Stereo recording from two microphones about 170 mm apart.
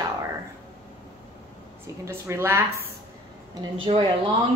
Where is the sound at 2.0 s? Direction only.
15° right (ahead or behind).